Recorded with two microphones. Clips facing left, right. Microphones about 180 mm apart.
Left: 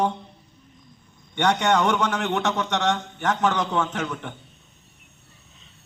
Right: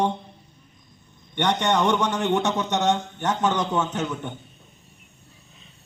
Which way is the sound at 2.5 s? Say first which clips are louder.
Right 1 dB; centre (ahead or behind).